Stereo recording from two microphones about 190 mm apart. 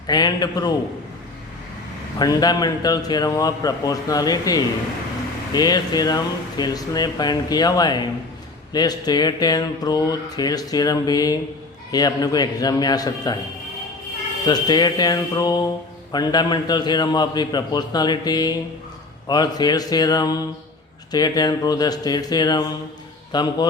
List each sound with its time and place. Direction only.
0.1 s speech: 20° left (ahead or behind)
2.1 s speech: 20° left (ahead or behind)
14.4 s speech: 20° left (ahead or behind)